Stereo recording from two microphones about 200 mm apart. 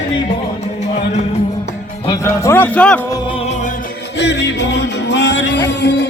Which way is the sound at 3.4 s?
35° left (ahead or behind).